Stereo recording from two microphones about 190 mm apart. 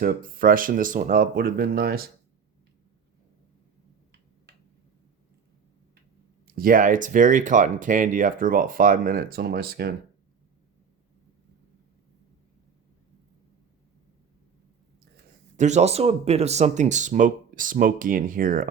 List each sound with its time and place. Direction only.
0.0 s speech: 50° right (ahead or behind)
4.5 s a sound: 60° right (ahead or behind)
6.5 s speech: 50° right (ahead or behind)
15.5 s speech: 35° right (ahead or behind)